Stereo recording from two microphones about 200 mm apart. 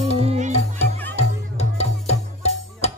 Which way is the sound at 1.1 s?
30° left (ahead or behind).